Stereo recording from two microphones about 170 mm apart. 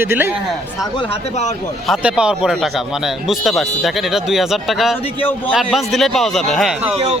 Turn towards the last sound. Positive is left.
turn(degrees=0)  # may be behind; listen again after turning